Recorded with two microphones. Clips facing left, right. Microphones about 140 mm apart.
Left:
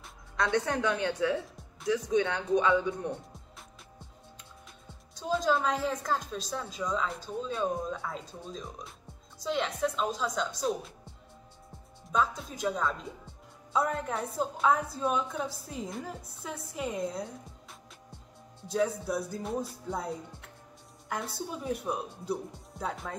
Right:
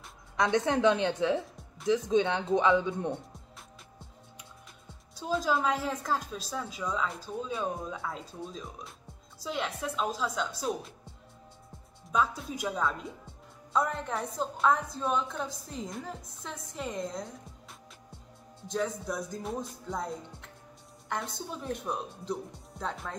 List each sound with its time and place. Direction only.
0.4 s speech: 20° right (ahead or behind)
5.1 s a woman's voice: 5° right (ahead or behind)
12.1 s a woman's voice: 5° right (ahead or behind)